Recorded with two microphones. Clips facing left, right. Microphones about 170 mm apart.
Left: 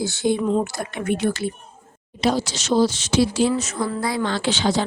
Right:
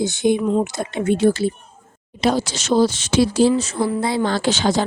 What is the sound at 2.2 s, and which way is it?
Speech, 55° right (ahead or behind).